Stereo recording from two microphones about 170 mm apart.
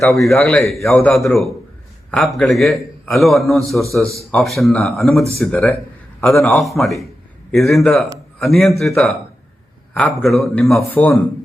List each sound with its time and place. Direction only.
0.0 s a man's voice: centre (ahead or behind)
0.8 s speech: 15° left (ahead or behind)
1.2 s a man's voice: centre (ahead or behind)
10.0 s a man's voice: centre (ahead or behind)